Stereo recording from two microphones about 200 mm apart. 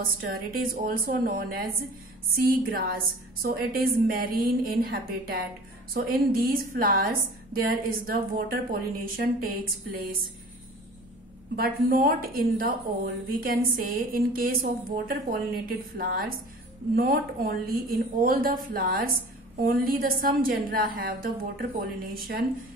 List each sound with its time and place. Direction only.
0.0 s a woman's voice: 45° right (ahead or behind)
11.5 s a woman's voice: 50° right (ahead or behind)